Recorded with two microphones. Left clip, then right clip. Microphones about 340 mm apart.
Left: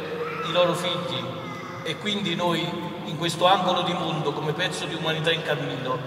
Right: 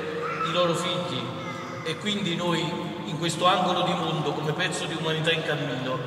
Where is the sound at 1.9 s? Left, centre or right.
Centre.